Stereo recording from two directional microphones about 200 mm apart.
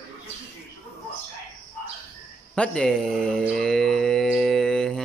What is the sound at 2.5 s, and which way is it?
Mantra, 5° left (ahead or behind).